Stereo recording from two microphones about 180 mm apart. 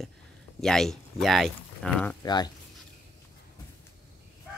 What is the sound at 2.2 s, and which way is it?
Speech, 25° left (ahead or behind).